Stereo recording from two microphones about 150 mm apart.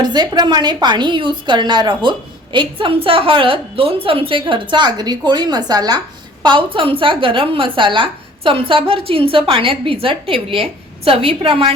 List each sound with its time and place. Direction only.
0.0 s a woman's voice: 30° right (ahead or behind)